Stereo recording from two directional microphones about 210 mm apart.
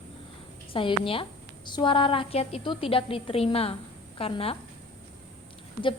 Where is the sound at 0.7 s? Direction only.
25° left (ahead or behind).